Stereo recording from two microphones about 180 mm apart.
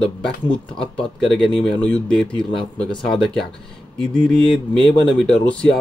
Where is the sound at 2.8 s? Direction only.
25° left (ahead or behind).